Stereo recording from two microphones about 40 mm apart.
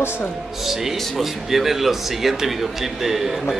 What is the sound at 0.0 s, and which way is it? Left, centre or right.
Speech, left.